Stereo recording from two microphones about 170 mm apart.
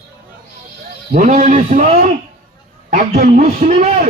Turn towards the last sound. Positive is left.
turn(degrees=-40)  # may be behind; listen again after turning